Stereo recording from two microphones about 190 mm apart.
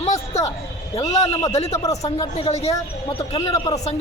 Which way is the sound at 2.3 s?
30° left (ahead or behind).